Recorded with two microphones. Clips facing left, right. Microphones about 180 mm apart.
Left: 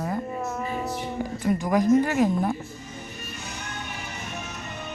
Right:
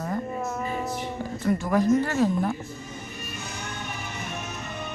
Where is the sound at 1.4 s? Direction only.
15° left (ahead or behind).